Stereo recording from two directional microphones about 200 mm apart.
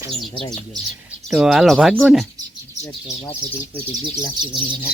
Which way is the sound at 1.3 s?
Centre (ahead or behind).